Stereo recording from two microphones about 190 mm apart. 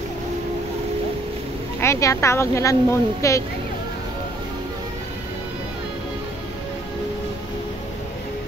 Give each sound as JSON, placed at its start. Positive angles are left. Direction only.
{"t": 1.8, "sound": "speech", "side_deg": 15}